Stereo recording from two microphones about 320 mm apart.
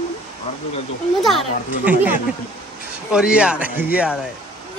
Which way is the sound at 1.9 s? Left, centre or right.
Centre.